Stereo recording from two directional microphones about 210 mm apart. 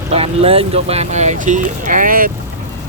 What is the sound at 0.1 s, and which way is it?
Speech, 30° right (ahead or behind).